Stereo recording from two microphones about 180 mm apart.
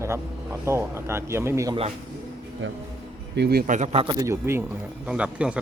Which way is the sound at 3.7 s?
40° right (ahead or behind).